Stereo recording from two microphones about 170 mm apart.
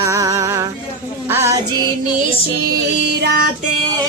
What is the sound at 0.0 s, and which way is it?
Music, 20° right (ahead or behind).